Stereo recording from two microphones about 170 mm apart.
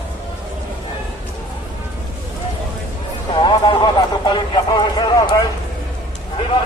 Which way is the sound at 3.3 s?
25° left (ahead or behind).